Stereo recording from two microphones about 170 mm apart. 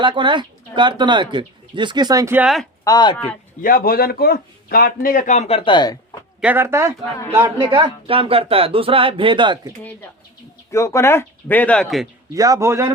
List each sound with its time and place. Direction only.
0.0 s speech: 30° right (ahead or behind)
2.8 s speech: 25° left (ahead or behind)
3.6 s speech: 55° left (ahead or behind); by 6.0 s 25° left (ahead or behind)
6.4 s speech: 10° right (ahead or behind)
7.4 s speech: 30° right (ahead or behind)
10.7 s speech: 15° left (ahead or behind)
12.3 s speech: 20° right (ahead or behind)